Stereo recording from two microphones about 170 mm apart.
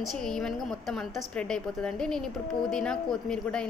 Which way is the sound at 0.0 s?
Centre (ahead or behind).